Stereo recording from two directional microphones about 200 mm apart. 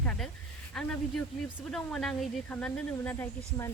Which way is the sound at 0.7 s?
5° left (ahead or behind).